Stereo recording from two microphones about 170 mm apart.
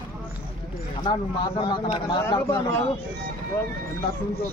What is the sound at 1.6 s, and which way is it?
Speech, 30° left (ahead or behind).